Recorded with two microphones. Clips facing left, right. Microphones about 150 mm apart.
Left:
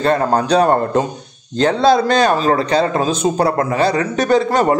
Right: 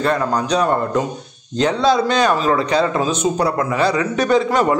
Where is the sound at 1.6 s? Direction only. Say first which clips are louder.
Left 3 dB; 35° left (ahead or behind).